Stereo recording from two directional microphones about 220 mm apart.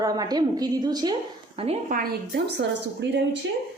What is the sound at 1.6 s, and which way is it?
Speech, 30° right (ahead or behind).